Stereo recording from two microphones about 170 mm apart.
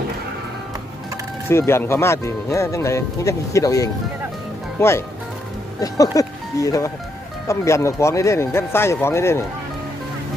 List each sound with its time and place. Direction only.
1.5 s speech: 15° left (ahead or behind)